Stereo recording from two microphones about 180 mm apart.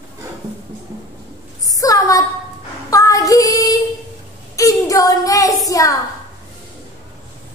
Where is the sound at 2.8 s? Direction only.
20° left (ahead or behind).